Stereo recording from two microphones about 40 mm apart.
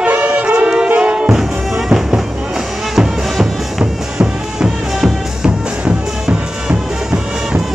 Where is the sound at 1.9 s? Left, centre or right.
Centre.